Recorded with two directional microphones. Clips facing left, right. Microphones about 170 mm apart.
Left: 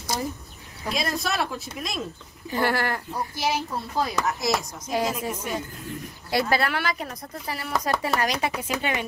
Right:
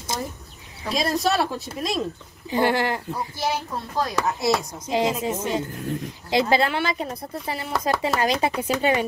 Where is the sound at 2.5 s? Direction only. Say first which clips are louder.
Right 3 dB; 20° right (ahead or behind).